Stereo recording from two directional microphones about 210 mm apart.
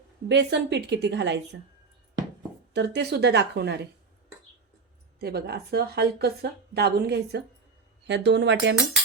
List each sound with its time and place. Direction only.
0.3 s a woman's voice: 55° right (ahead or behind)
2.7 s a woman's voice: 55° right (ahead or behind)
5.2 s a woman's voice: 50° right (ahead or behind)